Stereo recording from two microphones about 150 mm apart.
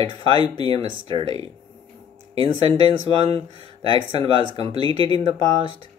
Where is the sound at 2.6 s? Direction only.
35° right (ahead or behind).